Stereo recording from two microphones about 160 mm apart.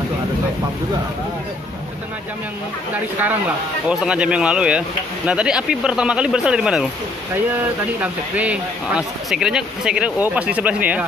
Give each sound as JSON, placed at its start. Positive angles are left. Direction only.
{"t": 3.2, "sound": "speech", "side_deg": -10}
{"t": 8.0, "sound": "speech", "side_deg": -10}